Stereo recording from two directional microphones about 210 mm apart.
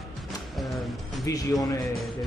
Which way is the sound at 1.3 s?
15° left (ahead or behind).